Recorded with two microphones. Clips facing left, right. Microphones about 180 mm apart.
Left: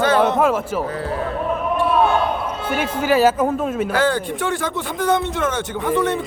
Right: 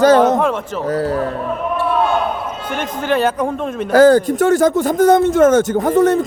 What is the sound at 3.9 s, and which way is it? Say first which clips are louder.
Speech: right 15 dB; 40° right (ahead or behind).